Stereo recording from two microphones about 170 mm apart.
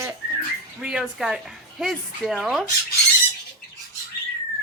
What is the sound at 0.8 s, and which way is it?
A woman's voice, 5° right (ahead or behind).